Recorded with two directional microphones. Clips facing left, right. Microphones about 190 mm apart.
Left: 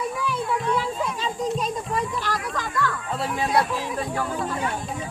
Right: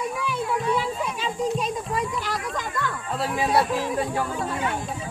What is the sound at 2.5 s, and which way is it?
Music, 20° right (ahead or behind).